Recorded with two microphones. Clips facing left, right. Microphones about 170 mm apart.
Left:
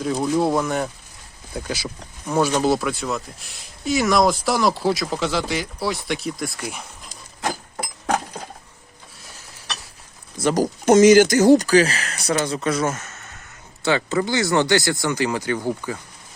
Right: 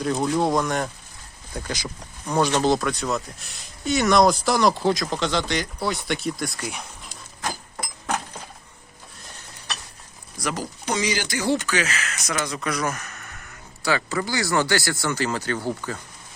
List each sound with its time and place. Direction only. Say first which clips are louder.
0.0 s speech: left 2 dB; centre (ahead or behind)
10.5 s speech: left 13 dB; 45° left (ahead or behind); by 16.0 s 15° left (ahead or behind)